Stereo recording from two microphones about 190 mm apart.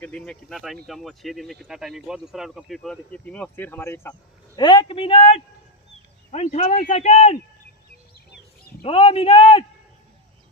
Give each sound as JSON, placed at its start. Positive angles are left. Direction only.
{"t": 0.0, "sound": "speech", "side_deg": 5}
{"t": 8.8, "sound": "a man's voice", "side_deg": 30}